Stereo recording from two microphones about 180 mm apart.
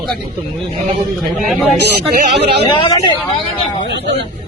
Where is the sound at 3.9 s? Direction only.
70° right (ahead or behind).